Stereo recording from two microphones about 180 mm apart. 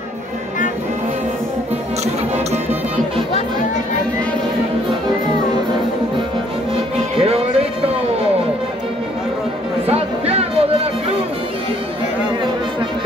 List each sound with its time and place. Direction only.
7.2 s music: 30° right (ahead or behind)
9.8 s music: 35° right (ahead or behind)